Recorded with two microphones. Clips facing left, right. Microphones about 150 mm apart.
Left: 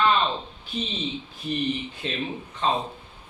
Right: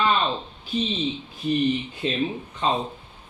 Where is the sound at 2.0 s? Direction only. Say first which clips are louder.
Right 5 dB; 15° right (ahead or behind).